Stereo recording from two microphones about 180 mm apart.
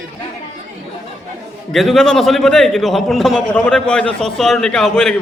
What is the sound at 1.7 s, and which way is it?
A man's voice, centre (ahead or behind).